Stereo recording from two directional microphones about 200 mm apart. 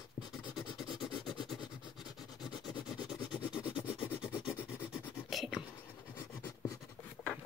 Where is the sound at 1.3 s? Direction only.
Centre (ahead or behind).